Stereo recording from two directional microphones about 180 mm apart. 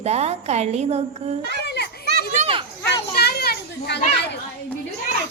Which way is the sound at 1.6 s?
65° left (ahead or behind).